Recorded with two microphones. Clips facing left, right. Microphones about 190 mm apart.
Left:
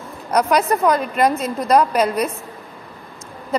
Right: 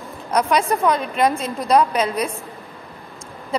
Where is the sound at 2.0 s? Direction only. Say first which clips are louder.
Left 3 dB; 55° left (ahead or behind).